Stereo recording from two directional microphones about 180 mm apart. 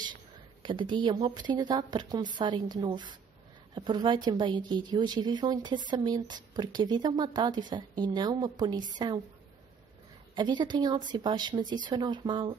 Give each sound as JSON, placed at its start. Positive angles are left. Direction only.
{"t": 0.1, "sound": "speech", "side_deg": -25}
{"t": 10.3, "sound": "speech", "side_deg": -25}